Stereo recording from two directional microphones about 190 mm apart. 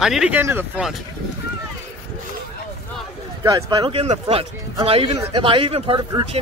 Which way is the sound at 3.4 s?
20° right (ahead or behind).